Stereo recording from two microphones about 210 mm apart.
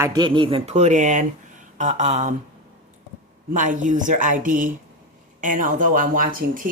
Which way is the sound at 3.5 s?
35° right (ahead or behind).